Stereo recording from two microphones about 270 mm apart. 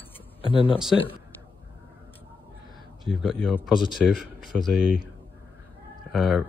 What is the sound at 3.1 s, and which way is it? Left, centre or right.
Speech, centre.